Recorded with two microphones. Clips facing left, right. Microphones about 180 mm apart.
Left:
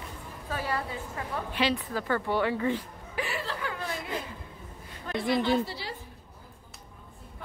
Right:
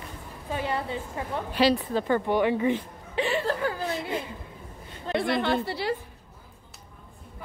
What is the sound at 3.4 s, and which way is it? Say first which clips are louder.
Chuckle: right 7 dB; 45° right (ahead or behind).